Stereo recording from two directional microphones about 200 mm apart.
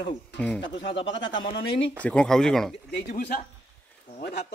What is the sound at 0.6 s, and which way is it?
Speech, 65° left (ahead or behind).